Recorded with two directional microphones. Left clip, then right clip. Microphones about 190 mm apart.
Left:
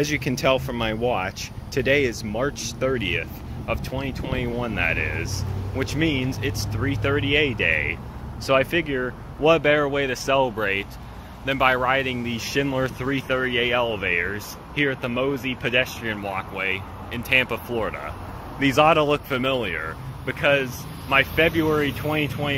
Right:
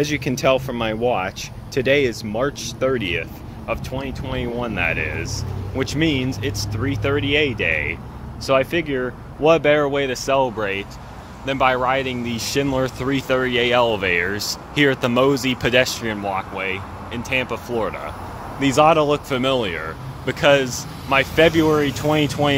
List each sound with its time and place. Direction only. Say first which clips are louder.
0.0 s speech: right 3 dB; 5° right (ahead or behind); by 22.6 s 20° right (ahead or behind)